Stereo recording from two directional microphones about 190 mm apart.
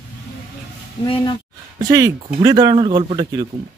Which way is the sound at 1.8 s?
20° right (ahead or behind).